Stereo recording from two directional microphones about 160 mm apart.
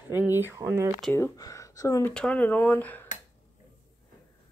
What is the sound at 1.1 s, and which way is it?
Speech, 20° left (ahead or behind).